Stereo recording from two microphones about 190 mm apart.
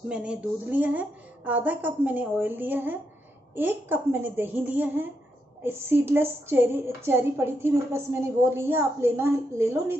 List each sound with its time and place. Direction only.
0.1 s a woman's voice: 5° right (ahead or behind)